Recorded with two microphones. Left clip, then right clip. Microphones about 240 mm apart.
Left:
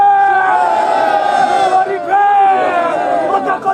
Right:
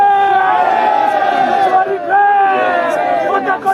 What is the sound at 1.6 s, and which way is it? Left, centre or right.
Crowd, centre.